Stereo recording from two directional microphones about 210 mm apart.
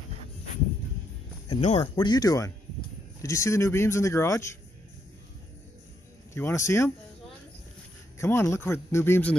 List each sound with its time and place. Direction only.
1.6 s speech: 30° left (ahead or behind)
2.0 s speech: 20° left (ahead or behind)
6.3 s speech: 15° left (ahead or behind)
8.2 s speech: 10° left (ahead or behind)